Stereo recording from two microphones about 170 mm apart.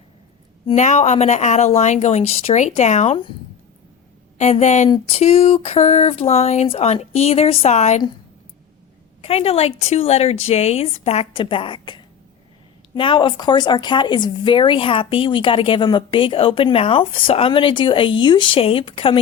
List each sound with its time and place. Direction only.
0.8 s speech: 45° left (ahead or behind)
4.4 s speech: 45° left (ahead or behind)
9.2 s speech: 35° left (ahead or behind)